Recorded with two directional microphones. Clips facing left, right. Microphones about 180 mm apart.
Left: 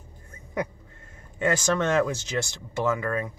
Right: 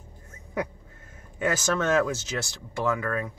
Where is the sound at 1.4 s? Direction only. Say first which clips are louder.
Left 2 dB; 5° right (ahead or behind).